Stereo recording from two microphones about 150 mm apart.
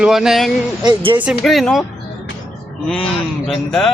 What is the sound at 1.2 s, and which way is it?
Speech, centre (ahead or behind).